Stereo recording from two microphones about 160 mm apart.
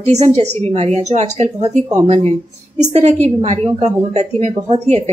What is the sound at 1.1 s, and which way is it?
A woman's voice, 45° right (ahead or behind).